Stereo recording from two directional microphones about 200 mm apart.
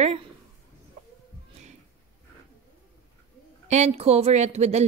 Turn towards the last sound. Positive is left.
turn(degrees=-35)  # may be behind; listen again after turning